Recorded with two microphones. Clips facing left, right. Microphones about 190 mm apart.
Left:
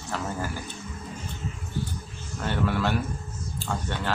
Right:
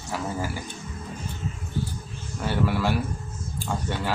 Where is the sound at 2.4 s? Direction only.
10° right (ahead or behind).